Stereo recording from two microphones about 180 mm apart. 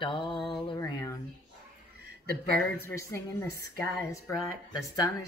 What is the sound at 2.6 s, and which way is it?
Speech, 15° left (ahead or behind).